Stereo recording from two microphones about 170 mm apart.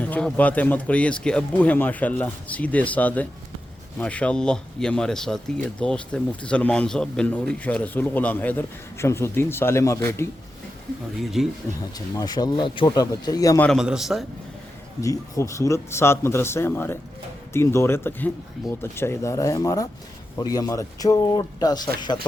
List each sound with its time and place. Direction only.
0.0 s a man's voice: 5° left (ahead or behind)
11.2 s speech: centre (ahead or behind)
11.9 s speech: 20° left (ahead or behind)
13.7 s speech: 5° right (ahead or behind)
15.0 s a man's voice: 20° left (ahead or behind)